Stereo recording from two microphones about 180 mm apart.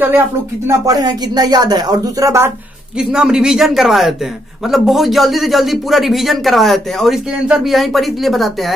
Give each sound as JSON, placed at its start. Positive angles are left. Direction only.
{"t": 0.7, "sound": "speech", "side_deg": -20}
{"t": 3.0, "sound": "a man's voice", "side_deg": -5}